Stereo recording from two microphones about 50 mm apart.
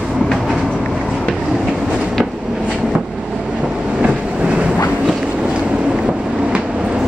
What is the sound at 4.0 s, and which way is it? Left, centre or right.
Train, right.